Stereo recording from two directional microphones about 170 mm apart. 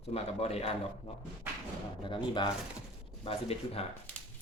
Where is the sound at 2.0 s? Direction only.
30° left (ahead or behind).